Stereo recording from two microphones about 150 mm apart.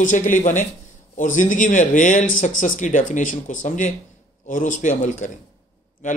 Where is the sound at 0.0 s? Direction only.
60° left (ahead or behind).